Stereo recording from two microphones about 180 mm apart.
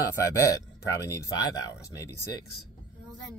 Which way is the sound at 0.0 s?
15° left (ahead or behind).